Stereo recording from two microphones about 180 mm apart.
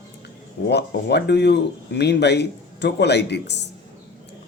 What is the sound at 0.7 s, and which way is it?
Speech, 65° left (ahead or behind).